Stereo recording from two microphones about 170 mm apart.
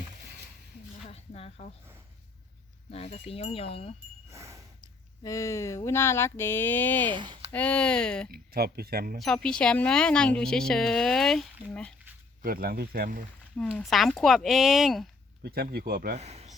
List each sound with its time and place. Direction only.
1.0 s a sound: 40° left (ahead or behind)
2.9 s speech: 35° left (ahead or behind)
4.3 s a sound: 15° right (ahead or behind)
5.2 s speech: 20° left (ahead or behind)
7.1 s speech: 30° right (ahead or behind)
7.5 s speech: 5° left (ahead or behind)
8.3 s speech: 65° right (ahead or behind)
9.1 s speech: centre (ahead or behind)
12.4 s speech: 60° right (ahead or behind)
13.6 s speech: centre (ahead or behind)
15.7 s speech: 60° right (ahead or behind)
16.1 s a man's voice: 40° right (ahead or behind)